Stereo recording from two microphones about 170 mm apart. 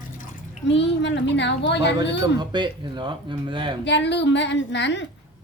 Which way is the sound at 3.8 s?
90° left.